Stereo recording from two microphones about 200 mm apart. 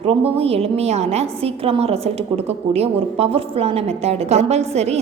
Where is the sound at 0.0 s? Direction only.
30° right (ahead or behind).